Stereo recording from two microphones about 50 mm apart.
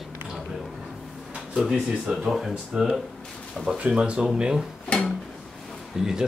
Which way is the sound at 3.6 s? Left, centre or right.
Right.